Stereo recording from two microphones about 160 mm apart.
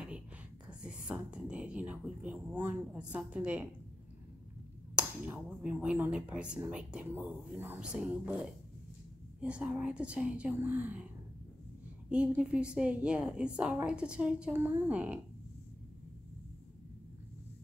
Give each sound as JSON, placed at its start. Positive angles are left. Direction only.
{"t": 0.7, "sound": "speech", "side_deg": -5}
{"t": 4.9, "sound": "speech", "side_deg": -10}
{"t": 12.1, "sound": "speech", "side_deg": -5}